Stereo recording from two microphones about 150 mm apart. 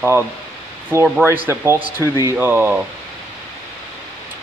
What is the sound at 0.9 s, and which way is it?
Speech, 15° right (ahead or behind).